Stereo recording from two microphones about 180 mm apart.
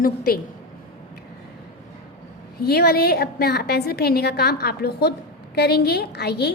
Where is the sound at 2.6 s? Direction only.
60° left (ahead or behind).